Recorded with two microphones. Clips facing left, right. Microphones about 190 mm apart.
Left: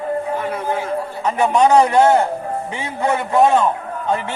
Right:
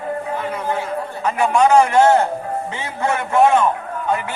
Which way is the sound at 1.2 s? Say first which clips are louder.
Left 1 dB; 20° left (ahead or behind).